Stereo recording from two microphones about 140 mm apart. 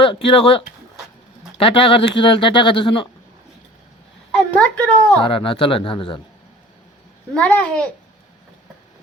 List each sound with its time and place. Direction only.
0.0 s speech: 40° left (ahead or behind)
4.5 s a child's voice: 10° left (ahead or behind)
5.2 s speech: 40° left (ahead or behind)
7.3 s a child's voice: 10° left (ahead or behind)